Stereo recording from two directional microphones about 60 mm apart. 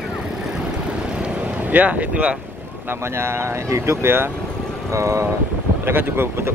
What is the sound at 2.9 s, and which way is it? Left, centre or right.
Speech, right.